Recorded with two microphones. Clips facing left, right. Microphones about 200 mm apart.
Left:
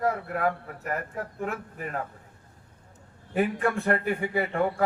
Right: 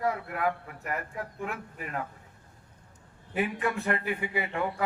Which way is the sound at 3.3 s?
40° left (ahead or behind).